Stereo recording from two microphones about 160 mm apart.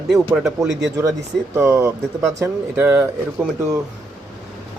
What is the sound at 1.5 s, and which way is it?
Speech, 15° right (ahead or behind).